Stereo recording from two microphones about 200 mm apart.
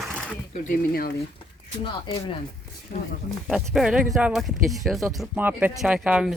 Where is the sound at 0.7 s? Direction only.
50° left (ahead or behind).